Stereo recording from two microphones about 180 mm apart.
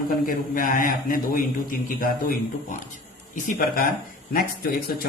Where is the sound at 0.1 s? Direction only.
50° left (ahead or behind).